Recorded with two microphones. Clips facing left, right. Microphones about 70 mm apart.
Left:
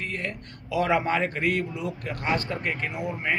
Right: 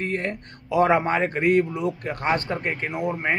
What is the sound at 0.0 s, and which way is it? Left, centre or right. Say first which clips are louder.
A man's voice: right 5 dB; right.